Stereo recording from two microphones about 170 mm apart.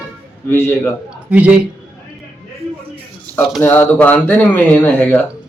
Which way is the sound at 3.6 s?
10° left (ahead or behind).